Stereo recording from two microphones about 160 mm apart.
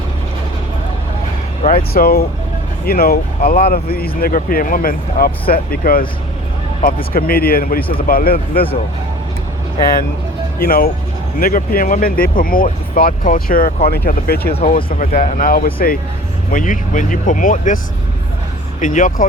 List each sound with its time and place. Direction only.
1.6 s speech: 65° left (ahead or behind)
10.6 s speech: 70° left (ahead or behind)
13.8 s speech: 75° left (ahead or behind)
14.8 s speech: 55° left (ahead or behind)
18.8 s speech: 55° left (ahead or behind)